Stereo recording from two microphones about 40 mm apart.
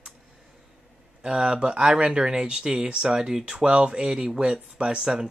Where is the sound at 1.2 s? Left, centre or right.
Right.